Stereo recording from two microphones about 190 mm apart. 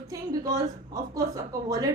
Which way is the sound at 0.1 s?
20° right (ahead or behind).